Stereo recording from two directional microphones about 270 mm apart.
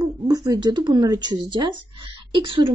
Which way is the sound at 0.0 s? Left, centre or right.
Centre.